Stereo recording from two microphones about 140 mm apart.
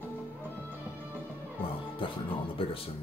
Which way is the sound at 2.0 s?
35° left (ahead or behind).